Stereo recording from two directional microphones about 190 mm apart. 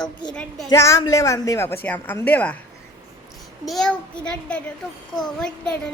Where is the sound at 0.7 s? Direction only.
15° left (ahead or behind).